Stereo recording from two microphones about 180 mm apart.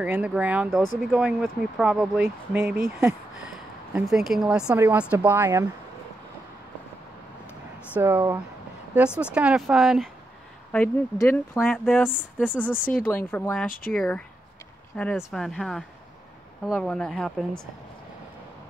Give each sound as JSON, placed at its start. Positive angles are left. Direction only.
{"t": 0.0, "sound": "speech", "side_deg": -5}
{"t": 7.9, "sound": "speech", "side_deg": -10}
{"t": 10.7, "sound": "speech", "side_deg": 10}
{"t": 12.7, "sound": "speech", "side_deg": 50}
{"t": 13.0, "sound": "speech", "side_deg": 10}